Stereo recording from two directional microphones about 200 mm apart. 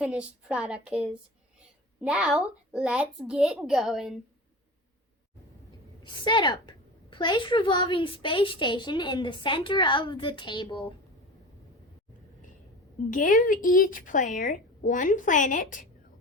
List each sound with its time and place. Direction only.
0.0 s a child's voice: 5° right (ahead or behind)
6.0 s a woman's voice: 20° left (ahead or behind)
13.1 s a woman's voice: 40° left (ahead or behind)